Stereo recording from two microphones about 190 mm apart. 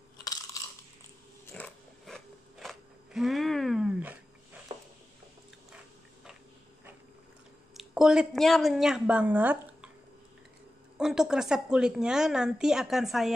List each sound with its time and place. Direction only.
0.2 s crunch: 20° left (ahead or behind)
1.4 s biting: 5° left (ahead or behind)
7.7 s a woman's voice: 5° right (ahead or behind)
11.0 s speech: 5° right (ahead or behind)